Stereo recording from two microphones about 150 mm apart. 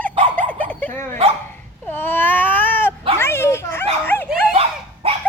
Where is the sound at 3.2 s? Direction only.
15° left (ahead or behind).